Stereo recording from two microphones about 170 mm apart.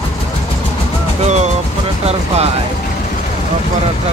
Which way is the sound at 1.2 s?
40° right (ahead or behind).